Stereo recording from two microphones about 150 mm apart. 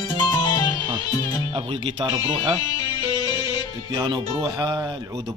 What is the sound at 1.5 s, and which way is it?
A man's voice, 30° right (ahead or behind).